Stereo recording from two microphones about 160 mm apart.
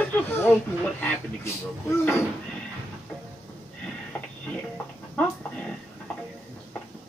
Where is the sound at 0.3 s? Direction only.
15° left (ahead or behind).